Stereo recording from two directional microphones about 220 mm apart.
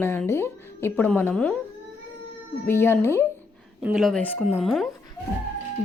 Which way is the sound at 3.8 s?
5° right (ahead or behind).